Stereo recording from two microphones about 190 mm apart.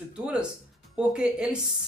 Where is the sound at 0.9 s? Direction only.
5° right (ahead or behind).